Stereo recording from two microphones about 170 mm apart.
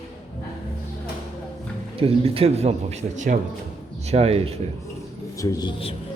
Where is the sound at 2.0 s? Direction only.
35° right (ahead or behind).